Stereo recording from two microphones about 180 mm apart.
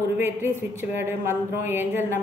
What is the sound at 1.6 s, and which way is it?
Speech, 10° right (ahead or behind).